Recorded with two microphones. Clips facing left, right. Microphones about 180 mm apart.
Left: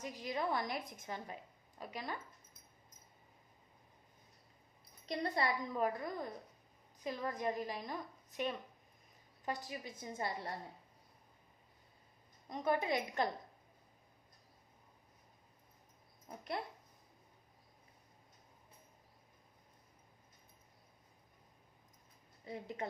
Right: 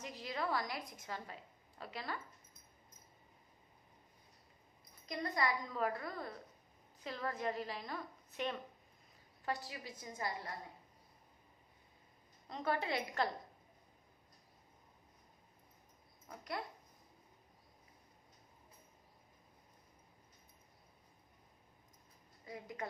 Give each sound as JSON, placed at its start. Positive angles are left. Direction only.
{"t": 0.0, "sound": "a woman's voice", "side_deg": 15}
{"t": 5.0, "sound": "a woman's voice", "side_deg": 30}
{"t": 12.5, "sound": "a woman's voice", "side_deg": 15}
{"t": 16.3, "sound": "a woman's voice", "side_deg": 25}
{"t": 22.4, "sound": "a woman's voice", "side_deg": 25}